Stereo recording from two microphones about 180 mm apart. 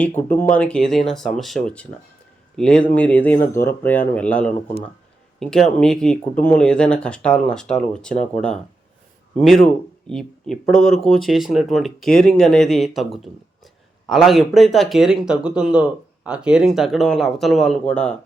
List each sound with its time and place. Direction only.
0.2 s speech: 10° left (ahead or behind)